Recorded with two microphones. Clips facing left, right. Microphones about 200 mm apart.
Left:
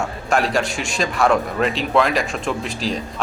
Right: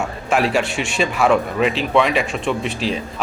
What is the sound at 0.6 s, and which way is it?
Speech, 40° left (ahead or behind).